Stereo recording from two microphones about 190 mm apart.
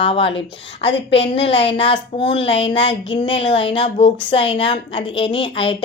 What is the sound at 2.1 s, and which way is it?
Speech, 30° left (ahead or behind).